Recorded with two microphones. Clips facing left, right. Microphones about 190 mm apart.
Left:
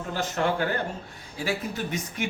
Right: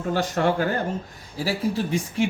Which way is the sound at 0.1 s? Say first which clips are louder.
Right 4 dB; 40° right (ahead or behind).